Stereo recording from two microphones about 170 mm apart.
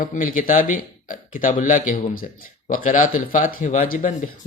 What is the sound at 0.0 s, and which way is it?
Speech, 50° left (ahead or behind).